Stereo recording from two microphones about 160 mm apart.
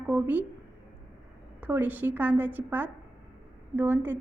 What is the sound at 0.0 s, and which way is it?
Speech, 10° right (ahead or behind).